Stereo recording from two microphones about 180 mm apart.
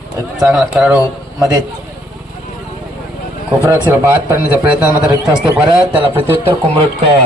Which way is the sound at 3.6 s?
15° right (ahead or behind).